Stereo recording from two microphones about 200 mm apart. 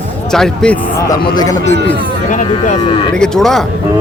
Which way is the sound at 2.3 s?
40° left (ahead or behind).